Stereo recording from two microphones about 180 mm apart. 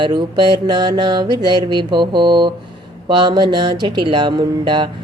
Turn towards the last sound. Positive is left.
turn(degrees=-25)  # may be behind; listen again after turning